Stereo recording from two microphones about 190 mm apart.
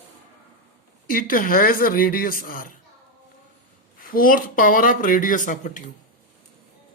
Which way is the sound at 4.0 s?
50° left (ahead or behind).